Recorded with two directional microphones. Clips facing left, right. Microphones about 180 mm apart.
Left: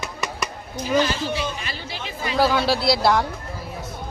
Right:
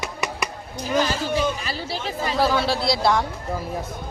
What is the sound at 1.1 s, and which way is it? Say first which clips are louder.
Speech: right 3 dB; 40° right (ahead or behind).